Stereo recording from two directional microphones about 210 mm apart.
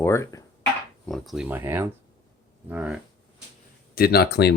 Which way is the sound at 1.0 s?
Centre (ahead or behind).